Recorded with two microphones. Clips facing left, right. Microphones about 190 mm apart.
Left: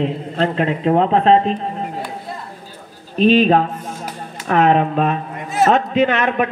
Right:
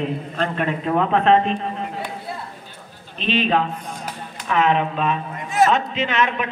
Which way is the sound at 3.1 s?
45° left (ahead or behind).